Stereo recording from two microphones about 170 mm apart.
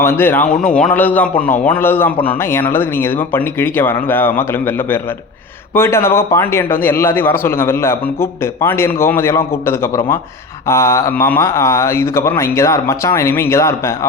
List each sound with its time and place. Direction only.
0.0 s a man's voice: 15° left (ahead or behind)
2.1 s a man's voice: 30° left (ahead or behind)
2.4 s a man's voice: 15° left (ahead or behind)